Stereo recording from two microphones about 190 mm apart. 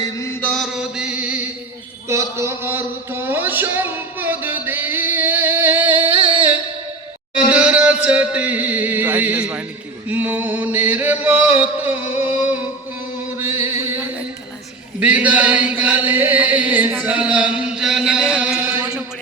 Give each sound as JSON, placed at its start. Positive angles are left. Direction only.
{"t": 0.0, "sound": "mantra", "side_deg": 15}
{"t": 0.5, "sound": "mantra", "side_deg": 0}
{"t": 2.0, "sound": "a sound", "side_deg": -15}
{"t": 6.1, "sound": "music", "side_deg": -25}
{"t": 7.5, "sound": "music", "side_deg": -5}
{"t": 10.1, "sound": "chant", "side_deg": -10}
{"t": 13.4, "sound": "mantra", "side_deg": -10}
{"t": 15.0, "sound": "chant", "side_deg": -5}